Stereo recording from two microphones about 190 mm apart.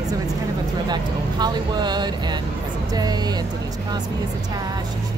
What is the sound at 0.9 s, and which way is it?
Speech, 20° right (ahead or behind).